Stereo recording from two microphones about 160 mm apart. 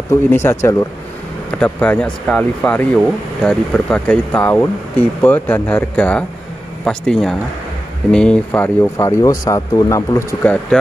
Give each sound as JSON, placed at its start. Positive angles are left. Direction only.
{"t": 0.1, "sound": "speech", "side_deg": 15}
{"t": 10.4, "sound": "speech", "side_deg": 10}